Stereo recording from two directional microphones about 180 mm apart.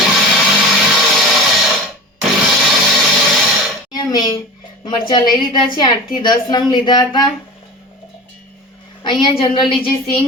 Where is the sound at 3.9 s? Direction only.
25° left (ahead or behind).